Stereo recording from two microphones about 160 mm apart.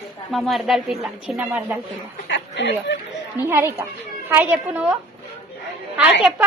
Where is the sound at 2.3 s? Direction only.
90° left.